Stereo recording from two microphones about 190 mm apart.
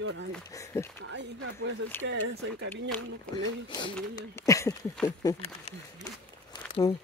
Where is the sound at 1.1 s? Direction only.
80° right.